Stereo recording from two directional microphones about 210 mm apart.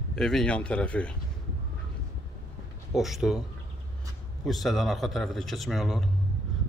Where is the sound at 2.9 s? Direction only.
Centre (ahead or behind).